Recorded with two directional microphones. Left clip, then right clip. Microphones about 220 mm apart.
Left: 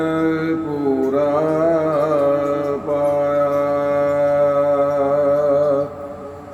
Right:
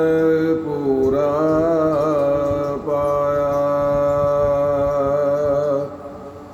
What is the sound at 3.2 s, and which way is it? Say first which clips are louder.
Music: left 1 dB; 5° right (ahead or behind).